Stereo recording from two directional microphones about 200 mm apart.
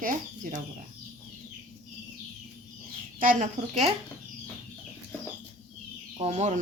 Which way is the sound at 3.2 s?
40° right (ahead or behind).